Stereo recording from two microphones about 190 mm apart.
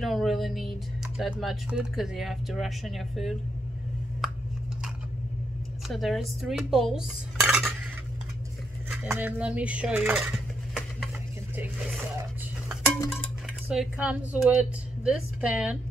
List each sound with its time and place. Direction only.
0.0 s speech: centre (ahead or behind)
5.9 s a woman's voice: centre (ahead or behind)
9.0 s dishes: 10° right (ahead or behind)
13.7 s a woman's voice: 5° right (ahead or behind)